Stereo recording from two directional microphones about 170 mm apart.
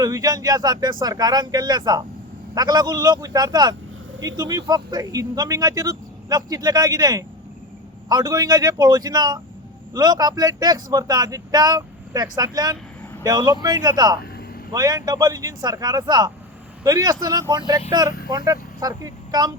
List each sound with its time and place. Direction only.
0.0 s a man's voice: 20° right (ahead or behind)